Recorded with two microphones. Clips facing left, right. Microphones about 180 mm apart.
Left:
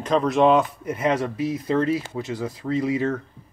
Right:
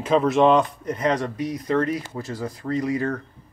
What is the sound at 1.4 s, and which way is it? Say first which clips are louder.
Speech: left 1 dB; 25° left (ahead or behind).